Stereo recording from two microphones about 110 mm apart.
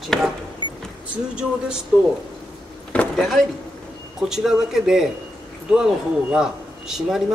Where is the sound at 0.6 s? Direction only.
45° right (ahead or behind).